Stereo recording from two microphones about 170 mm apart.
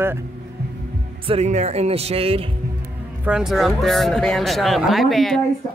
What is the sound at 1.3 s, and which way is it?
Speech, 40° right (ahead or behind).